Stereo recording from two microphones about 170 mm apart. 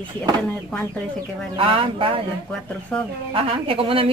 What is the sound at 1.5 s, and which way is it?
Speech, 30° right (ahead or behind).